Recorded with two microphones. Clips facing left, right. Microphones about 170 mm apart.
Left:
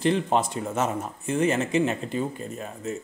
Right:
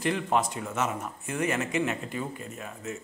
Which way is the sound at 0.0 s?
30° left (ahead or behind).